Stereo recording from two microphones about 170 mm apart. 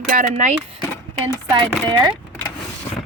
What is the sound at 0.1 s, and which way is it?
Speech, 45° right (ahead or behind).